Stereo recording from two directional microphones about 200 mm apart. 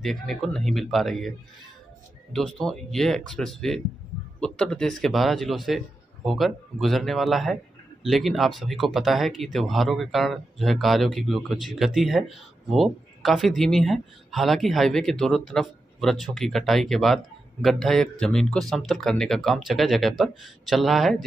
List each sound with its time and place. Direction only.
0.0 s speech: centre (ahead or behind)
2.3 s speech: centre (ahead or behind)